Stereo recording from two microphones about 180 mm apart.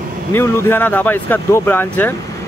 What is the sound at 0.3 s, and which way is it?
Speech, 15° left (ahead or behind).